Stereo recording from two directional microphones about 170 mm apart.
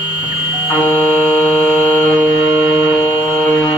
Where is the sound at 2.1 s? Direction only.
10° right (ahead or behind).